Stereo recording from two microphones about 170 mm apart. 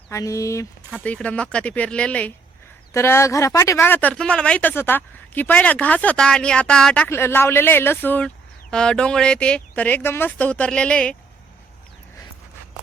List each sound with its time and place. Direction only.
0.1 s speech: 20° left (ahead or behind)
1.0 s speech: 10° left (ahead or behind)